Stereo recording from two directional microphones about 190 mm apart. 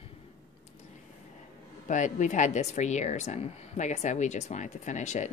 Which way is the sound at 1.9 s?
40° left (ahead or behind).